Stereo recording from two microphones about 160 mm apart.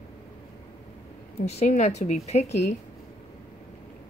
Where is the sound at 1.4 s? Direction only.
45° left (ahead or behind).